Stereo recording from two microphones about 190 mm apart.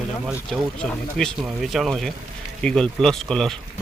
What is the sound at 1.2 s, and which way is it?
Speech, centre (ahead or behind).